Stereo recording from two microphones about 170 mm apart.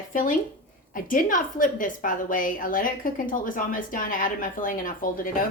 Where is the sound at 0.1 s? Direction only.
50° left (ahead or behind).